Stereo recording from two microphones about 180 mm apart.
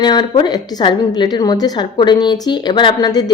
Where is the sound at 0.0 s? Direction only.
25° left (ahead or behind).